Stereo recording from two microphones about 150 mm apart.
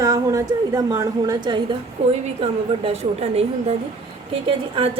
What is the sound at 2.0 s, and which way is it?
A woman's voice, 45° right (ahead or behind).